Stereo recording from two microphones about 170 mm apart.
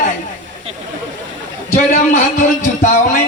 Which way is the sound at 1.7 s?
45° left (ahead or behind).